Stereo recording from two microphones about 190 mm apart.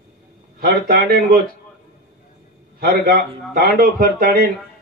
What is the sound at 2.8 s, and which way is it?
A man's voice, 50° right (ahead or behind).